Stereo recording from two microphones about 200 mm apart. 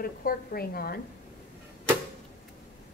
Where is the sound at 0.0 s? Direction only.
45° left (ahead or behind).